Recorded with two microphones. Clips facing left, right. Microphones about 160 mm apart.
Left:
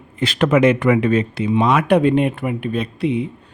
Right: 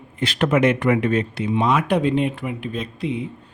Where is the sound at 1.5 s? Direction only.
80° left.